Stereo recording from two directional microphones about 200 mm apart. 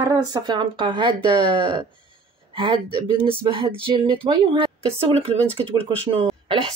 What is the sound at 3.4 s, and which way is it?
A woman's voice, 25° right (ahead or behind).